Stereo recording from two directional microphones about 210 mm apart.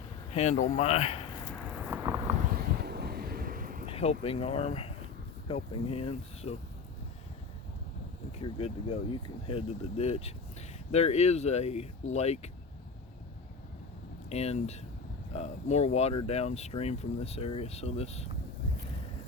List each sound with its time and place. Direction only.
0.3 s speech: 30° left (ahead or behind)
1.5 s vehicle: 5° left (ahead or behind)
1.9 s a sound: 10° right (ahead or behind)
2.6 s wind noise: 50° right (ahead or behind)
3.8 s speech: 30° left (ahead or behind)
8.4 s speech: 30° left (ahead or behind)
14.3 s speech: 30° left (ahead or behind)